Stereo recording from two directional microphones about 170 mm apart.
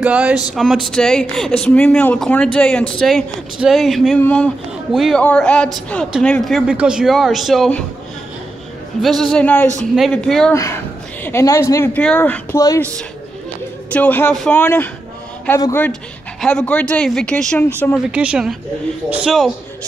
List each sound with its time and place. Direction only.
0.0 s speech: 10° right (ahead or behind)
9.0 s speech: centre (ahead or behind)
10.5 s speech: 15° left (ahead or behind)
12.5 s a woman's voice: 20° left (ahead or behind)
13.8 s speech: 10° left (ahead or behind)
14.6 s speech: 10° left (ahead or behind)
18.1 s speech: 5° right (ahead or behind)